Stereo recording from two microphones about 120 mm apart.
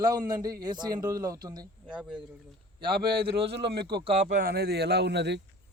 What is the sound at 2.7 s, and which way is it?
A man's voice, 45° right (ahead or behind).